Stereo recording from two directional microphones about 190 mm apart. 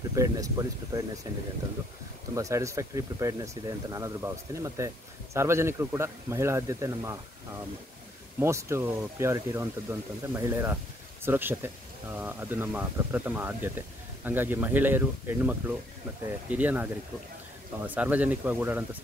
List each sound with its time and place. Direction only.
0.1 s speech: 15° right (ahead or behind)
2.3 s speech: 15° right (ahead or behind)
8.4 s speech: 15° right (ahead or behind)